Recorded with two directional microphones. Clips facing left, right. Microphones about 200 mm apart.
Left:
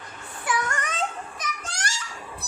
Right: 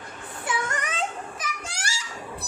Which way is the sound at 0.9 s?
10° right (ahead or behind).